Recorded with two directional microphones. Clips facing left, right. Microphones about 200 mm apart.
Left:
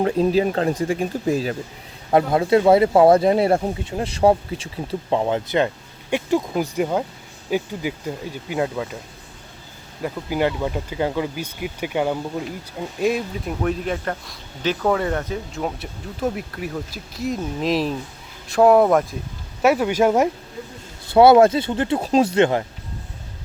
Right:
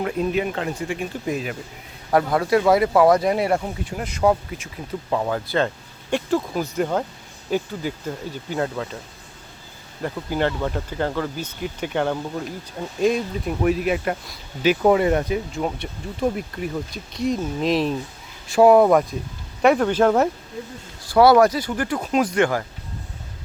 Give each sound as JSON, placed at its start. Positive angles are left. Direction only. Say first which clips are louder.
{"t": 0.0, "sound": "speech", "louder": "left 5 dB", "side_deg": 30}
{"t": 10.0, "sound": "speech", "louder": "left 1 dB", "side_deg": 10}
{"t": 15.5, "sound": "speech", "louder": "right 1 dB", "side_deg": 0}
{"t": 21.1, "sound": "speech", "louder": "left 2 dB", "side_deg": 25}